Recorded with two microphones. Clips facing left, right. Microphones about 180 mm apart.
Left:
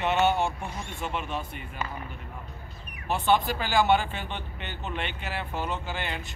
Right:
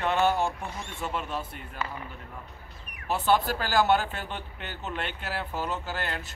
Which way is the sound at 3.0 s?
5° right (ahead or behind).